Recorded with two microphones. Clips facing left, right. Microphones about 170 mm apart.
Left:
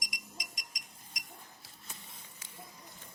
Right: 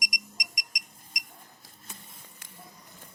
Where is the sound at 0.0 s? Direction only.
15° right (ahead or behind).